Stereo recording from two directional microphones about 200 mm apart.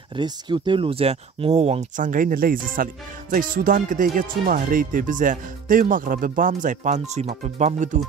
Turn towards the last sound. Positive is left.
turn(degrees=-35)  # may be behind; listen again after turning